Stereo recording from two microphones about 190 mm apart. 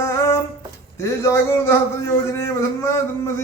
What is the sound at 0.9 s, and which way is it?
A man's voice, 15° left (ahead or behind).